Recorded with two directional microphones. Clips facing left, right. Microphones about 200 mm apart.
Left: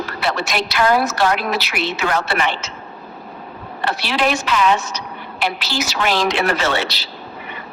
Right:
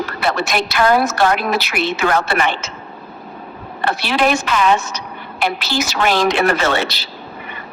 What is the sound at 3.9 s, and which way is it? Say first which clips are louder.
A woman's voice: right 3 dB; 50° right (ahead or behind).